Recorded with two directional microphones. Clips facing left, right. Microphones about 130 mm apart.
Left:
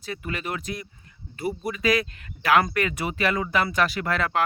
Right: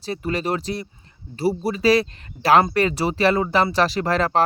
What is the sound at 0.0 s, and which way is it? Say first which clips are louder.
Speech: right 7 dB; 35° right (ahead or behind).